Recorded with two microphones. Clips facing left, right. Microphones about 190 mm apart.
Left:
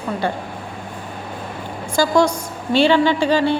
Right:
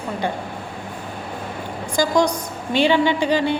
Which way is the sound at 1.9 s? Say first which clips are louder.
Left 2 dB; 15° right (ahead or behind).